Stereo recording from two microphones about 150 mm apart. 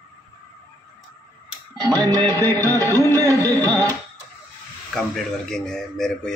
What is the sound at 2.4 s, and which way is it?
Music, 15° left (ahead or behind).